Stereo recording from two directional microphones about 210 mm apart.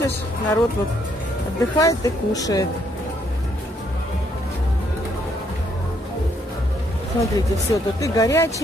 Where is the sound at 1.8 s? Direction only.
15° left (ahead or behind).